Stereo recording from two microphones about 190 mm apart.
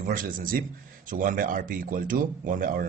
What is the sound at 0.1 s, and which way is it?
Speech, 45° right (ahead or behind).